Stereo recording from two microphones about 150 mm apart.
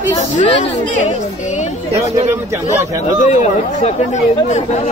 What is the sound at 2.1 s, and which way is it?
Speech, 15° right (ahead or behind).